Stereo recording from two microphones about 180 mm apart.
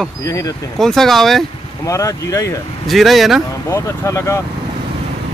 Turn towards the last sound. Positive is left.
turn(degrees=15)  # may be behind; listen again after turning